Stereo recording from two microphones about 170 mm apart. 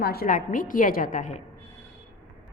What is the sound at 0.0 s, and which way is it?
A woman's voice, 65° left (ahead or behind).